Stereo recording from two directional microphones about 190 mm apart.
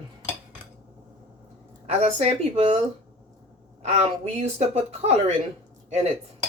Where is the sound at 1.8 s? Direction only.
35° right (ahead or behind).